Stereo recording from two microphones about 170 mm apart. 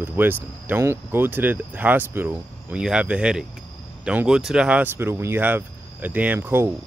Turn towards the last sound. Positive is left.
turn(degrees=-15)  # may be behind; listen again after turning